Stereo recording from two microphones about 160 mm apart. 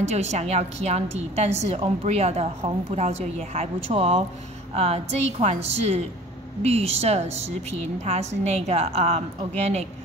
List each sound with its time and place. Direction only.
0.0 s a woman's voice: 45° right (ahead or behind)